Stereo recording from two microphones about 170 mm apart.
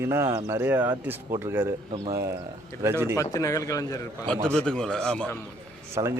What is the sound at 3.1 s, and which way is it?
Speech, 20° left (ahead or behind).